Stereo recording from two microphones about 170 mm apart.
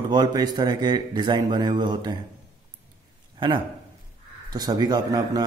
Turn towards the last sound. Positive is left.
turn(degrees=-20)  # may be behind; listen again after turning